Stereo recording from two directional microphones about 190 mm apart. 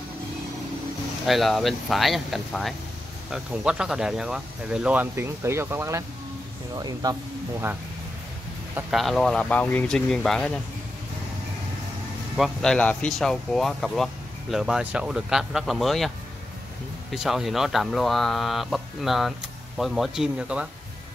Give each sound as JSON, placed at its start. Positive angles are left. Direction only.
{"t": 1.2, "sound": "speech", "side_deg": 0}
{"t": 8.9, "sound": "speech", "side_deg": 0}
{"t": 12.4, "sound": "speech", "side_deg": 5}
{"t": 17.1, "sound": "speech", "side_deg": 0}